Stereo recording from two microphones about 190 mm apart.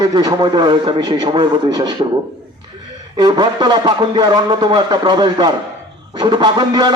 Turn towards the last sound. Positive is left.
turn(degrees=-25)  # may be behind; listen again after turning